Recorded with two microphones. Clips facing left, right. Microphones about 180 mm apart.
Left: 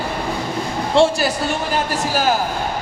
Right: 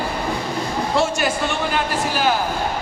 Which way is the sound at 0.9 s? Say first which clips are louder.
Left 6 dB; 30° left (ahead or behind).